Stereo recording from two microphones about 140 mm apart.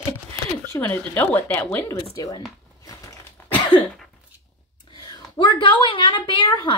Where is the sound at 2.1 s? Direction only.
25° left (ahead or behind).